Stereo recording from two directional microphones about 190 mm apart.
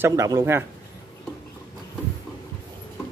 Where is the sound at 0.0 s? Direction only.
15° right (ahead or behind).